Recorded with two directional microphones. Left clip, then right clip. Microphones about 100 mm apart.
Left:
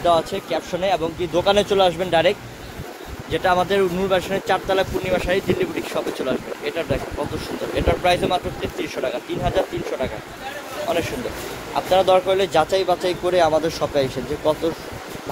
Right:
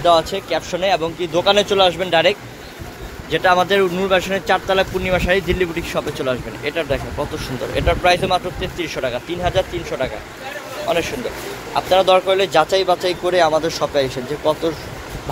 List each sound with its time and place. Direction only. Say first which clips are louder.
0.0 s speech: right 4 dB; 20° left (ahead or behind); by 2.3 s 40° left (ahead or behind)
3.3 s speech: right 4 dB; 20° left (ahead or behind)